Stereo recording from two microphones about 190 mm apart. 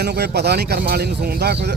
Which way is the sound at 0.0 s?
60° right (ahead or behind).